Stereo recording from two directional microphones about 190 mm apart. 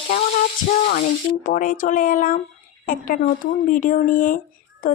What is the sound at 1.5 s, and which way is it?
Speech, 45° left (ahead or behind).